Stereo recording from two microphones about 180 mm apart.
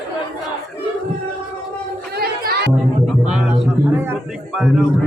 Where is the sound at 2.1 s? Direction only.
60° right (ahead or behind).